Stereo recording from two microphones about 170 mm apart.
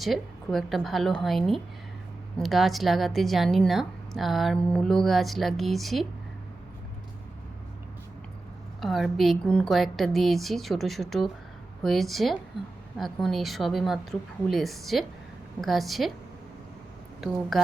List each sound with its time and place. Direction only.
0.0 s a woman's voice: centre (ahead or behind)
8.8 s a woman's voice: centre (ahead or behind)
17.5 s a woman's voice: centre (ahead or behind)